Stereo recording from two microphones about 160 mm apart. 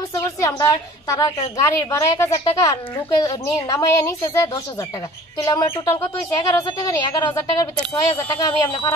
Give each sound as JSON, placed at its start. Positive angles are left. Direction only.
{"t": 0.2, "sound": "speech", "side_deg": 20}